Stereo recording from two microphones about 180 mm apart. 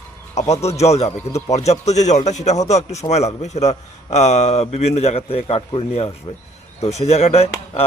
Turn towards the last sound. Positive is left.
turn(degrees=35)  # may be behind; listen again after turning